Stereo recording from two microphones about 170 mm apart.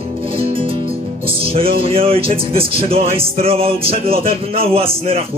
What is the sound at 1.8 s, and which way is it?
A man's voice, 35° right (ahead or behind).